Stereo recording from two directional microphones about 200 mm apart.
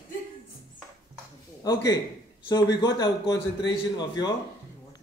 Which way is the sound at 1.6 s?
20° left (ahead or behind).